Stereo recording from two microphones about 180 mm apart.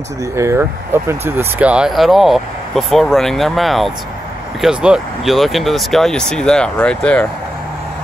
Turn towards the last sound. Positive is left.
turn(degrees=5)  # may be behind; listen again after turning